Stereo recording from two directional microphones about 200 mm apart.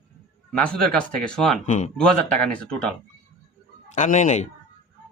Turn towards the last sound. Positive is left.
turn(degrees=35)  # may be behind; listen again after turning